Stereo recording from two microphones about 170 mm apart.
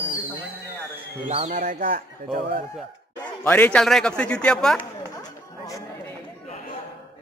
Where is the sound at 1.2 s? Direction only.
35° right (ahead or behind); by 2.6 s 60° right (ahead or behind).